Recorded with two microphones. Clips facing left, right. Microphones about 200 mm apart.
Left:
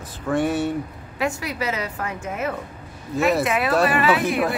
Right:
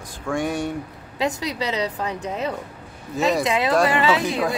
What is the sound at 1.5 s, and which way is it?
Speech, 20° right (ahead or behind).